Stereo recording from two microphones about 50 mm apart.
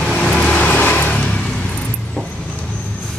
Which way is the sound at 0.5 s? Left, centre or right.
Left.